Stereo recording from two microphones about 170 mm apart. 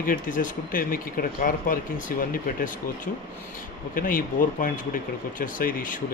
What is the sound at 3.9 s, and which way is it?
Speech, 55° left (ahead or behind).